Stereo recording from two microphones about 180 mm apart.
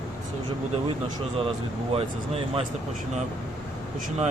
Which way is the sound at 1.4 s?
30° right (ahead or behind).